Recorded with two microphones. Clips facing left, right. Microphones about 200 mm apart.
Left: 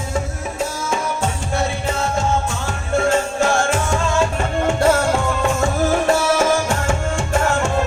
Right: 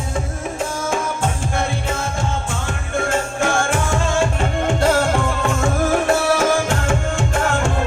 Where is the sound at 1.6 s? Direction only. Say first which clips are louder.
Left 3 dB; 55° right (ahead or behind).